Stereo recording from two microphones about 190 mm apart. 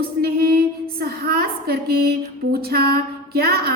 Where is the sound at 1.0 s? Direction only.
55° right (ahead or behind).